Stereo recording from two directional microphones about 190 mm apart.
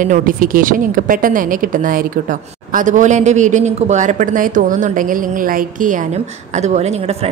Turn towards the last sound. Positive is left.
turn(degrees=-35)  # may be behind; listen again after turning